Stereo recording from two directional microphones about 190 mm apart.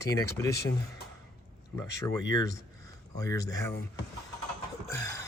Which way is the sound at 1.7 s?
15° left (ahead or behind).